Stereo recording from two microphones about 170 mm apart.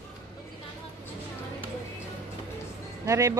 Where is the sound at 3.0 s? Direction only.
15° right (ahead or behind).